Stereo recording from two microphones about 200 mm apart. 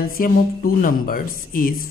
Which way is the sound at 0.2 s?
45° left (ahead or behind).